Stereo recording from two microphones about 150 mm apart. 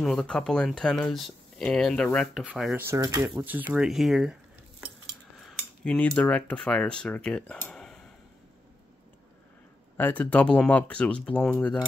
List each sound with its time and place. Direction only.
0.0 s speech: 5° left (ahead or behind)
2.5 s speech: 10° right (ahead or behind)
3.0 s speech: 25° right (ahead or behind)
3.7 s speech: 5° right (ahead or behind)
5.4 s cutlery: 5° left (ahead or behind)
9.9 s speech: 10° left (ahead or behind)